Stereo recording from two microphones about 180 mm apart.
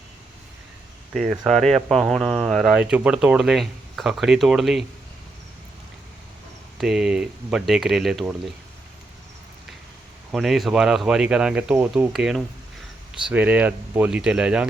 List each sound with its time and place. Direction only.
1.1 s speech: centre (ahead or behind)
6.7 s speech: 5° right (ahead or behind)
10.3 s speech: centre (ahead or behind)